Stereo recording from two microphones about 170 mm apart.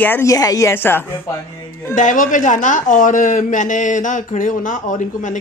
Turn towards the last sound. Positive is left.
turn(degrees=50)  # may be behind; listen again after turning